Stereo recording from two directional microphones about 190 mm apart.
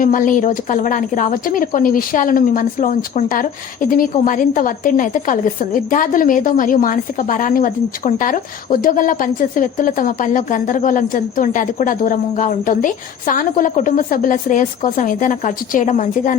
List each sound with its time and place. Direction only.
0.0 s a woman's voice: 45° left (ahead or behind)